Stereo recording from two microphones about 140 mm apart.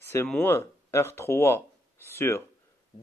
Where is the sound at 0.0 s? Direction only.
15° left (ahead or behind).